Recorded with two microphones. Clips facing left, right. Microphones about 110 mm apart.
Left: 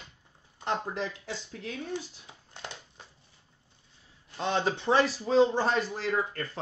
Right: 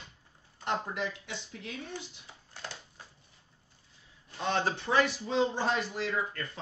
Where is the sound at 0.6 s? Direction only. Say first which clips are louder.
Left 2 dB; 30° left (ahead or behind).